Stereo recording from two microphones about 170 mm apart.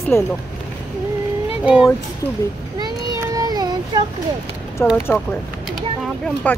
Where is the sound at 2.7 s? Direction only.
20° right (ahead or behind).